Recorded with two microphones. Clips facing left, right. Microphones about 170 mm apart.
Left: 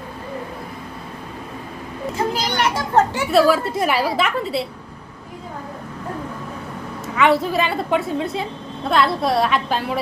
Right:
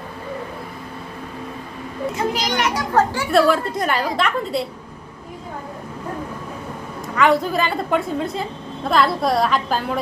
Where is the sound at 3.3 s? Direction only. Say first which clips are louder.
Left 1 dB; centre (ahead or behind).